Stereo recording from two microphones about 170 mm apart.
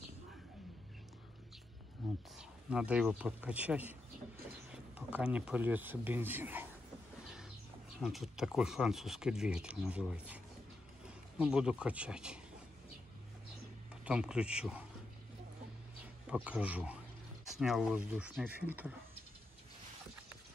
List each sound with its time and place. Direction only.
2.0 s speech: centre (ahead or behind)
8.0 s speech: centre (ahead or behind)
14.0 s speech: 5° right (ahead or behind)
16.4 s speech: 10° right (ahead or behind)